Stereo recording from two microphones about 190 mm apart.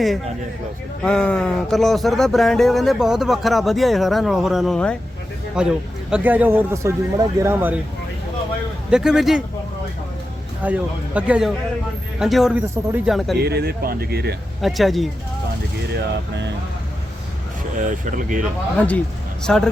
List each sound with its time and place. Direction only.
1.0 s a man's voice: 5° left (ahead or behind); by 7.8 s 10° right (ahead or behind)
8.9 s speech: 5° right (ahead or behind)
10.6 s a man's voice: 10° right (ahead or behind)
13.3 s speech: 60° right (ahead or behind)
14.6 s speech: centre (ahead or behind)
17.7 s speech: 40° right (ahead or behind)
18.8 s speech: 5° left (ahead or behind)